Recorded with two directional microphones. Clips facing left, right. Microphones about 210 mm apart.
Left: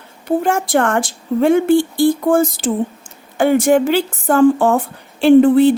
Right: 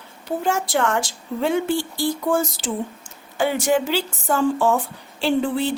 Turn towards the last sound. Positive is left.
turn(degrees=55)  # may be behind; listen again after turning